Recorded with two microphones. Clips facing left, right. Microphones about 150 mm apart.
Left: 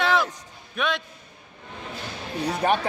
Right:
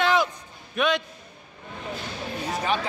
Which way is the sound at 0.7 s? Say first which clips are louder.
Right 3 dB; centre (ahead or behind).